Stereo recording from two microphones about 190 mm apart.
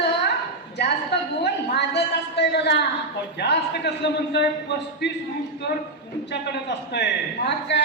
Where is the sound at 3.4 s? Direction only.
60° left (ahead or behind).